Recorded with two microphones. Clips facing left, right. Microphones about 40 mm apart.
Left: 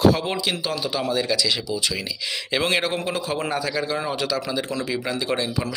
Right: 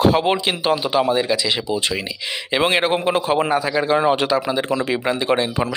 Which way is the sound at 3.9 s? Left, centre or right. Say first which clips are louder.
Right 8 dB; right.